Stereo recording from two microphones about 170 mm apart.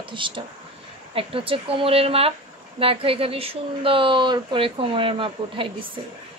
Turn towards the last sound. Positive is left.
turn(degrees=-30)  # may be behind; listen again after turning